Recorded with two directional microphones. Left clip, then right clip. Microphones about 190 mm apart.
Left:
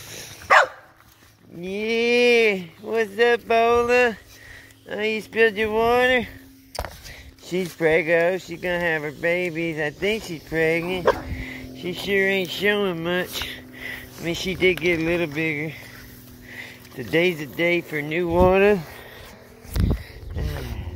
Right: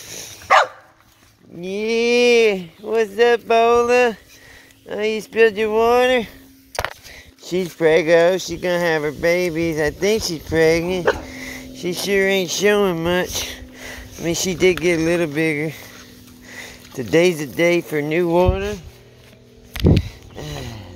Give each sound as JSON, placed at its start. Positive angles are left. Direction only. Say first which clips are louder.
{"t": 1.6, "sound": "a sound", "louder": "right 3 dB", "side_deg": -45}
{"t": 4.8, "sound": "speech", "louder": "right 3 dB", "side_deg": -40}
{"t": 7.5, "sound": "speech", "louder": "right 4 dB", "side_deg": -55}
{"t": 18.5, "sound": "speech", "louder": "left 7 dB", "side_deg": 45}
{"t": 20.3, "sound": "mechanisms", "louder": "right 3 dB", "side_deg": -20}